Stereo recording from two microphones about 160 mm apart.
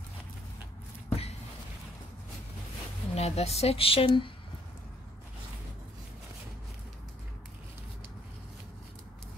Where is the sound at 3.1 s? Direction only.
40° left (ahead or behind).